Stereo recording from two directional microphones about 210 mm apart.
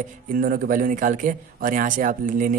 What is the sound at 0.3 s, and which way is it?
Speech, 40° right (ahead or behind).